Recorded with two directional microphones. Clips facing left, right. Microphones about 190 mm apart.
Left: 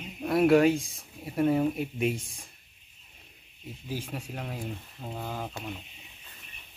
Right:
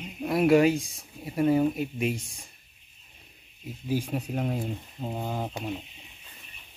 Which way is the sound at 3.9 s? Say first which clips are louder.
Right 8 dB; 15° right (ahead or behind).